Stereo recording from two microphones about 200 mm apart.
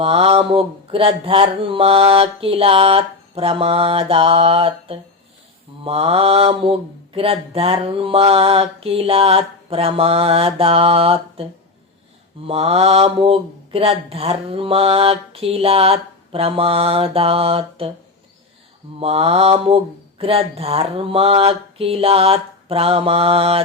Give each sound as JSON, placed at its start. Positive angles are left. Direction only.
{"t": 0.0, "sound": "mantra", "side_deg": -30}
{"t": 12.5, "sound": "mantra", "side_deg": -30}
{"t": 18.9, "sound": "mantra", "side_deg": -30}